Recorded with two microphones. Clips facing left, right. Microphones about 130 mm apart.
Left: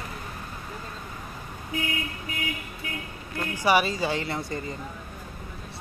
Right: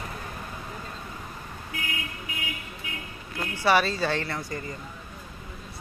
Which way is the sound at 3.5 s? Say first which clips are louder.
Even; 15° left (ahead or behind).